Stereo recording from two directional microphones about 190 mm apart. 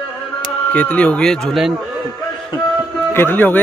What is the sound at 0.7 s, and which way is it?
Speech, 5° left (ahead or behind).